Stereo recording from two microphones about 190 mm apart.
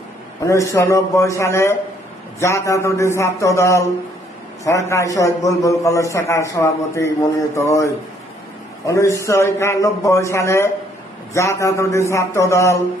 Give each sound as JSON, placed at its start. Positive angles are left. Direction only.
{"t": 0.4, "sound": "a man's voice", "side_deg": 15}
{"t": 8.9, "sound": "a man's voice", "side_deg": 15}